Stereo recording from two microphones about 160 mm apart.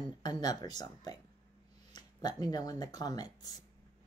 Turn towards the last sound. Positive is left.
turn(degrees=25)  # may be behind; listen again after turning